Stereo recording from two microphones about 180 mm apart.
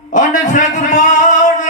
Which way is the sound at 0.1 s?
45° left (ahead or behind).